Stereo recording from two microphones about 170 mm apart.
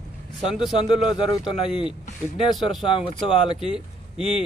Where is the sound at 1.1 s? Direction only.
25° left (ahead or behind).